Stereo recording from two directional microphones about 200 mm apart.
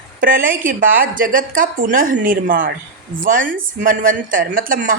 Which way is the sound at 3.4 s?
75° right (ahead or behind).